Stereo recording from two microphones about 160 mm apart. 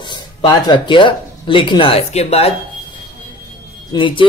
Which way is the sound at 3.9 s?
30° left (ahead or behind).